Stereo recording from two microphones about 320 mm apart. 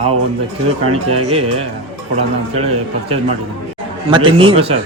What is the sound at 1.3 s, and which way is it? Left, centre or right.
Speech, centre.